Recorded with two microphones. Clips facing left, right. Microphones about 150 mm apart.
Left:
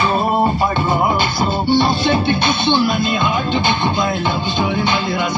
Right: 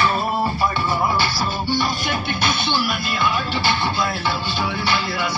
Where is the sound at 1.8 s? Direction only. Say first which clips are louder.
Left 8 dB; 25° left (ahead or behind).